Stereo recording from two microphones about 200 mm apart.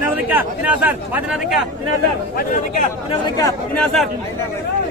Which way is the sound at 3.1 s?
20° left (ahead or behind).